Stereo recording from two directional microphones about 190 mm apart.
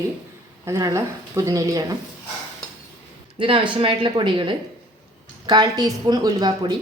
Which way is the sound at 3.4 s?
25° right (ahead or behind).